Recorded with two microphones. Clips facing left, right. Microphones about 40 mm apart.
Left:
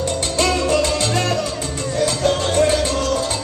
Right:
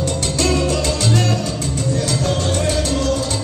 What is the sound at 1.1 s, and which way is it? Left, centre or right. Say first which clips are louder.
Music: even; left.